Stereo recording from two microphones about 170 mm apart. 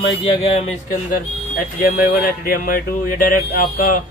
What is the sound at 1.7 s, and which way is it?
Speech, 60° left (ahead or behind).